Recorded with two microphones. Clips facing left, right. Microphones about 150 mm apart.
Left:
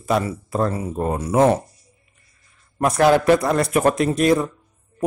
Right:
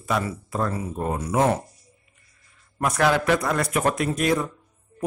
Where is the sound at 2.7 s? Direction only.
35° left (ahead or behind).